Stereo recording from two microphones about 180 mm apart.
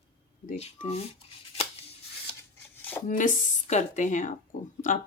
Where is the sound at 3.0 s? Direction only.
45° left (ahead or behind).